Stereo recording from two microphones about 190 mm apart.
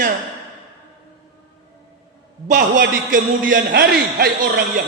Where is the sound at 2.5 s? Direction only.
45° right (ahead or behind).